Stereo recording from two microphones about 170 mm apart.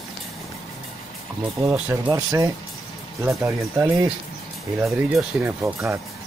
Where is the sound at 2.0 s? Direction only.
20° right (ahead or behind).